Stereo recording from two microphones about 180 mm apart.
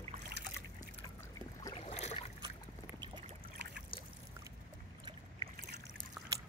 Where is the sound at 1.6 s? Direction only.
30° left (ahead or behind).